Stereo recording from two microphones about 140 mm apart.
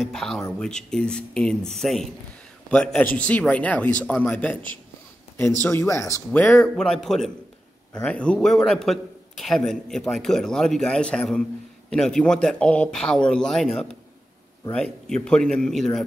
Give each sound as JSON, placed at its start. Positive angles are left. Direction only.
{"t": 0.0, "sound": "a man's voice", "side_deg": 5}
{"t": 6.3, "sound": "a man's voice", "side_deg": 5}